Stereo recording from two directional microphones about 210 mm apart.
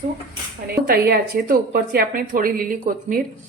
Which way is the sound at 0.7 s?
45° right (ahead or behind).